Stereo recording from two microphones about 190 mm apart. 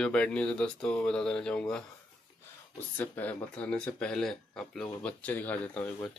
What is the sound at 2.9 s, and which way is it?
Speech, 10° left (ahead or behind).